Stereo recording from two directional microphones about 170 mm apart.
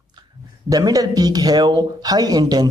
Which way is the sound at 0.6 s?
20° right (ahead or behind).